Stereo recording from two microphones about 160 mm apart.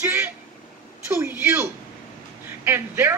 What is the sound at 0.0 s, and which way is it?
Vehicle, 15° right (ahead or behind).